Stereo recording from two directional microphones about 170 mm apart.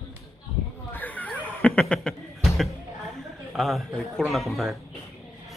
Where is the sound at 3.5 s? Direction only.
Centre (ahead or behind).